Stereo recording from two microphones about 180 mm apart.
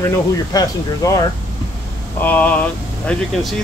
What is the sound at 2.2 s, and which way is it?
Speech, 10° left (ahead or behind).